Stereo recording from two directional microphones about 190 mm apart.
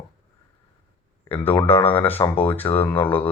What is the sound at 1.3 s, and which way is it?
Speech, 10° left (ahead or behind).